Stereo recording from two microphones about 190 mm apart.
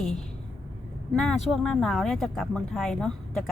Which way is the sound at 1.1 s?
5° left (ahead or behind).